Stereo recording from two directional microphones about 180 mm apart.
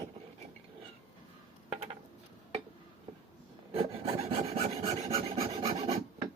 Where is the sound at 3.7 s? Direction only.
30° right (ahead or behind).